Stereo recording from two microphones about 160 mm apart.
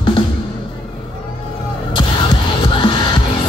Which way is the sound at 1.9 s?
30° left (ahead or behind).